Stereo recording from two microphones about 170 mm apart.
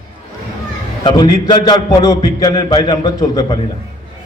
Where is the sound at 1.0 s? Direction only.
30° left (ahead or behind).